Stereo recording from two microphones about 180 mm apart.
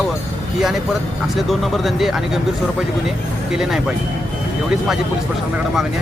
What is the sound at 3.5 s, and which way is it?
Speech, 5° right (ahead or behind).